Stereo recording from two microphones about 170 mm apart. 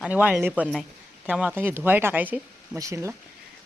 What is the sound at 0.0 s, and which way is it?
Speech, 10° right (ahead or behind).